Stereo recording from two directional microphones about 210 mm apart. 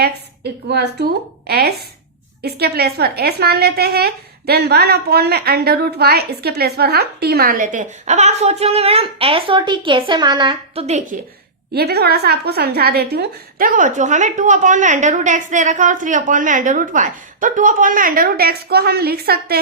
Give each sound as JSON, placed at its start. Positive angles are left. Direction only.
{"t": 0.7, "sound": "speech", "side_deg": -55}
{"t": 11.7, "sound": "a woman's voice", "side_deg": -50}